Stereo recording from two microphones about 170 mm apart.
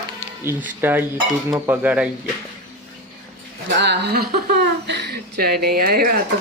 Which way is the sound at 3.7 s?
75° right (ahead or behind).